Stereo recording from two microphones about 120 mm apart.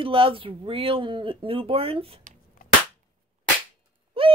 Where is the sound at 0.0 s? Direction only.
50° right (ahead or behind).